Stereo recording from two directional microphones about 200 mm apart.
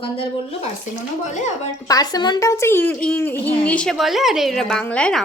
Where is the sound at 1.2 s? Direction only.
35° left (ahead or behind).